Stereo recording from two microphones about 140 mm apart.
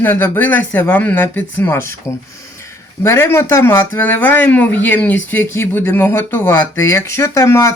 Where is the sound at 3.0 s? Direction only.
15° left (ahead or behind).